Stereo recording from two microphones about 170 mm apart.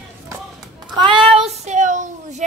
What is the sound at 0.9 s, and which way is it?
Child singing, 25° right (ahead or behind).